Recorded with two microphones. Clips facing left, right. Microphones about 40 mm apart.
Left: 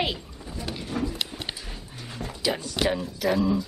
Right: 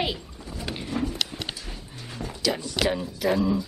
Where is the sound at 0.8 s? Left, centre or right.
Right.